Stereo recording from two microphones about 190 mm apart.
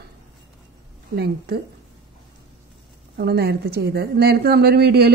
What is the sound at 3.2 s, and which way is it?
A woman's voice, 55° right (ahead or behind).